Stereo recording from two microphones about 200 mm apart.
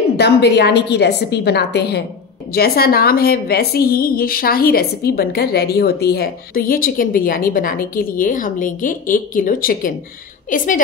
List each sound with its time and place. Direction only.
0.2 s a woman's voice: 55° left (ahead or behind)